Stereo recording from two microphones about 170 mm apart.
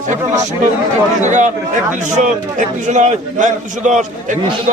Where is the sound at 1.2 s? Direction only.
45° right (ahead or behind).